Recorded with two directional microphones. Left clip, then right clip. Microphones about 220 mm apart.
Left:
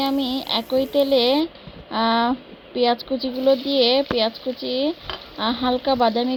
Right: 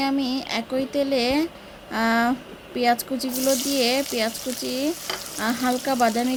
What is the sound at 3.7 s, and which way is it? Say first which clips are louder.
Speech: left 4 dB; 15° right (ahead or behind).